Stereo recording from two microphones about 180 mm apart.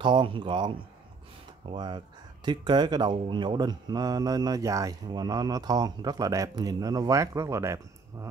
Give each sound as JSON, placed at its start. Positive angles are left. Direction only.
{"t": 0.0, "sound": "speech", "side_deg": -25}